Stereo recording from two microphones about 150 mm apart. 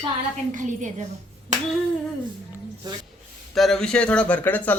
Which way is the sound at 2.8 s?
30° right (ahead or behind).